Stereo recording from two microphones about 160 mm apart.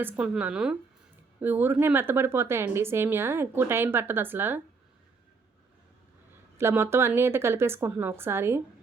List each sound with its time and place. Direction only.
0.0 s a woman's voice: 10° right (ahead or behind)
6.6 s a woman's voice: 15° right (ahead or behind)